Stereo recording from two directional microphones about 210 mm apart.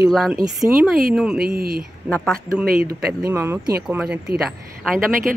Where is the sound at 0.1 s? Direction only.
Centre (ahead or behind).